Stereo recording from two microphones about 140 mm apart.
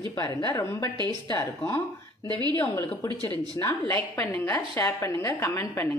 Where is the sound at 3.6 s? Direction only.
20° left (ahead or behind).